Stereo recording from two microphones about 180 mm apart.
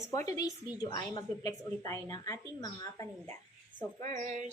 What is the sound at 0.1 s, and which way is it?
A woman's voice, 20° left (ahead or behind).